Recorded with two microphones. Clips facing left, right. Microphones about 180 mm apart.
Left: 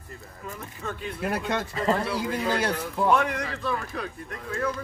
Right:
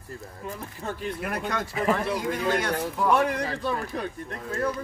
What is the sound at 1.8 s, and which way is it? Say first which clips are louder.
Speech: right 2 dB; 10° right (ahead or behind).